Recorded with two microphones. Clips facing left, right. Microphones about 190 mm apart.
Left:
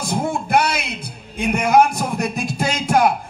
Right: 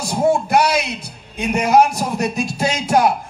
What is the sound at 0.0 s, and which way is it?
A man's voice, 55° left (ahead or behind).